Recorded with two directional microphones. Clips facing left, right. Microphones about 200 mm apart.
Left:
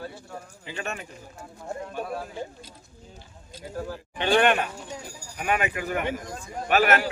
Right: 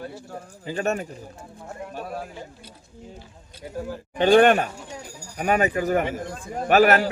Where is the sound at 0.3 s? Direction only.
40° right (ahead or behind).